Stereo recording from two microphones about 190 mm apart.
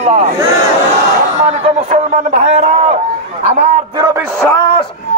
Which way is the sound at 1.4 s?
35° right (ahead or behind).